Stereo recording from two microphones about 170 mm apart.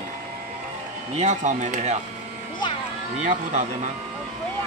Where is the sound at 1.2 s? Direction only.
45° right (ahead or behind).